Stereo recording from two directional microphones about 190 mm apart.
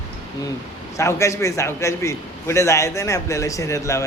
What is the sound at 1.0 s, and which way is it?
A man's voice, 15° left (ahead or behind).